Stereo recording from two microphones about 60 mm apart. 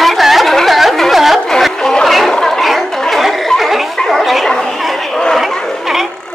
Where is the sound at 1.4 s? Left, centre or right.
Centre.